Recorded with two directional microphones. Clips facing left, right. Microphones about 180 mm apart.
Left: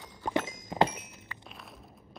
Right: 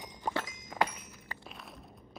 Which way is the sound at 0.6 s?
30° left (ahead or behind).